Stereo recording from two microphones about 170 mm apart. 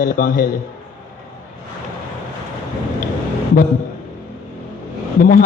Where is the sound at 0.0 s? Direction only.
55° left (ahead or behind).